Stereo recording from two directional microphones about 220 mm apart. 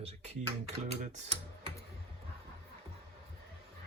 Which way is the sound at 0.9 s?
30° right (ahead or behind).